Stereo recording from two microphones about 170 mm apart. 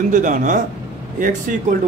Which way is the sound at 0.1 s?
50° right (ahead or behind).